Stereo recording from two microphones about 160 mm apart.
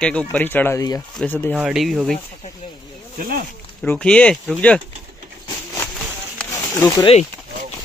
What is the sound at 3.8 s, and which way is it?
Speech, 10° left (ahead or behind).